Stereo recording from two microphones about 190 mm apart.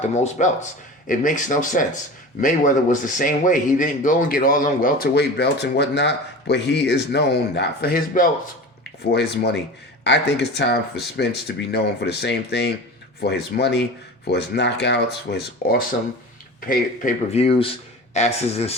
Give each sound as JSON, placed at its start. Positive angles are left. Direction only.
{"t": 0.1, "sound": "speech", "side_deg": 40}
{"t": 8.8, "sound": "speech", "side_deg": 60}